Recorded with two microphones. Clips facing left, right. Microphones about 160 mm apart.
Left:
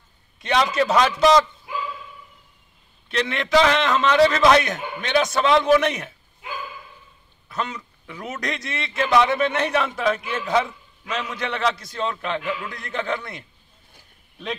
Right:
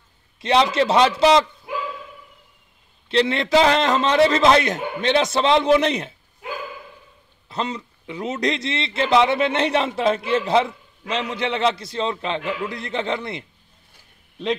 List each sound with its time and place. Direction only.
0.4 s a man's voice: 30° right (ahead or behind)
3.1 s a man's voice: 30° right (ahead or behind)
7.4 s a man's voice: 30° right (ahead or behind)